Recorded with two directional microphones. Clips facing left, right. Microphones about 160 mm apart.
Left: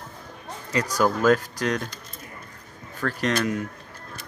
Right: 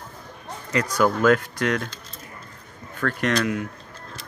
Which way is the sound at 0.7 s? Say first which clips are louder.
Right 1 dB; 35° left (ahead or behind).